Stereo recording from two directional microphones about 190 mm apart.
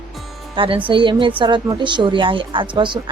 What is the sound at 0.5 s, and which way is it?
A woman's voice, 30° right (ahead or behind).